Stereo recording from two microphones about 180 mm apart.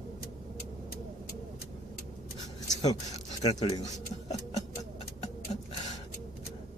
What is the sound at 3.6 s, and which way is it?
Speech, 20° left (ahead or behind).